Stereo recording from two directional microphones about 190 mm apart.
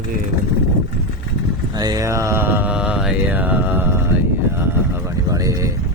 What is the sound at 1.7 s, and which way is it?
Mantra, 20° right (ahead or behind).